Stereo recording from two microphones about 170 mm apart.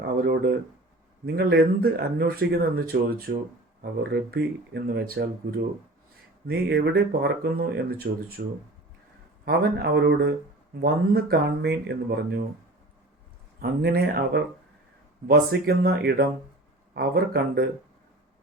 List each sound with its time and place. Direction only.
0.0 s a sound: 65° right (ahead or behind)
1.2 s speech: 65° right (ahead or behind)
9.5 s speech: 65° right (ahead or behind)
10.8 s speech: 65° right (ahead or behind)
13.6 s speech: 65° right (ahead or behind)